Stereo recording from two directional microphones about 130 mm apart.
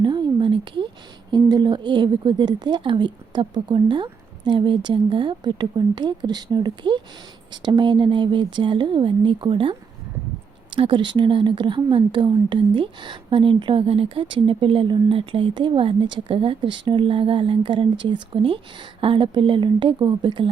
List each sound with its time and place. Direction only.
0.0 s a sound: 35° right (ahead or behind)
1.3 s a woman's voice: 35° right (ahead or behind)
10.8 s a woman's voice: 40° right (ahead or behind)